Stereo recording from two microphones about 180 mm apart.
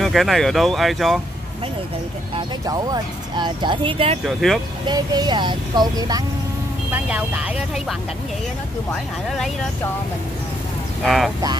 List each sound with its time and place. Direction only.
0.0 s speech: centre (ahead or behind)
2.6 s speech: 20° right (ahead or behind)
4.3 s speech: centre (ahead or behind)
4.8 s speech: 25° right (ahead or behind)
6.9 s speech: 5° right (ahead or behind)
11.1 s speech: centre (ahead or behind)